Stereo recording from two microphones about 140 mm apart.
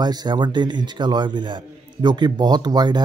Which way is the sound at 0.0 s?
30° right (ahead or behind).